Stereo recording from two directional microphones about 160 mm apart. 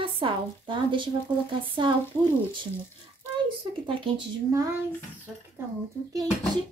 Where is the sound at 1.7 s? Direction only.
30° right (ahead or behind).